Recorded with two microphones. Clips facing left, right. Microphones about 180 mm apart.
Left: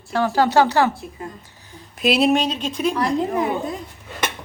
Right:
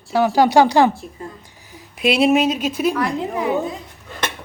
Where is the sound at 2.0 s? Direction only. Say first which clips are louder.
Right 2 dB; centre (ahead or behind).